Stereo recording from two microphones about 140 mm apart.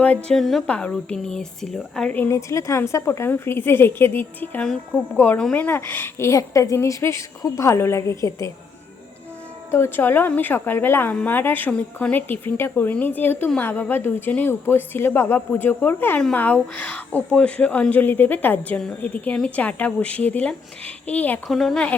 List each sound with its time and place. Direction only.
0.0 s a woman's voice: 10° left (ahead or behind)
9.7 s a woman's voice: 15° left (ahead or behind)
21.4 s speech: centre (ahead or behind)